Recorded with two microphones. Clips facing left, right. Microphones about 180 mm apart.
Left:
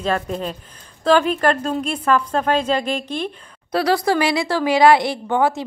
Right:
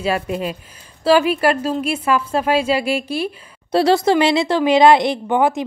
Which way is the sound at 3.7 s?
25° right (ahead or behind).